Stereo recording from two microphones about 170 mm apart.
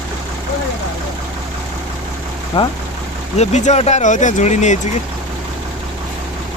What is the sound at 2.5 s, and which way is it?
Speech, 30° left (ahead or behind).